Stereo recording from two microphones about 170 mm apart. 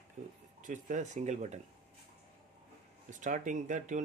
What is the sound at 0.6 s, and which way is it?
Speech, 50° right (ahead or behind).